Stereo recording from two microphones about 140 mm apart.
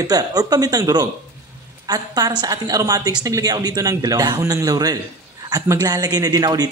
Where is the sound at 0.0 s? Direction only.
30° right (ahead or behind).